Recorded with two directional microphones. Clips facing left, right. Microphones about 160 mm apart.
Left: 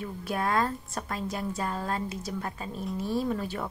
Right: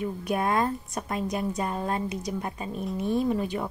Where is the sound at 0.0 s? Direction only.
20° right (ahead or behind).